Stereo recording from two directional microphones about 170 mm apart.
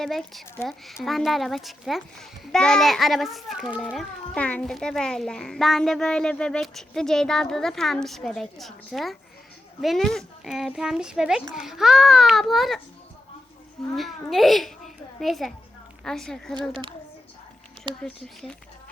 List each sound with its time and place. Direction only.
0.0 s a child's voice: centre (ahead or behind)
13.9 s a child's voice: centre (ahead or behind)
17.9 s speech: 30° right (ahead or behind)